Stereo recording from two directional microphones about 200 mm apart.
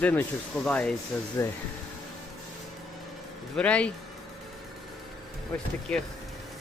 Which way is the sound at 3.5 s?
5° left (ahead or behind).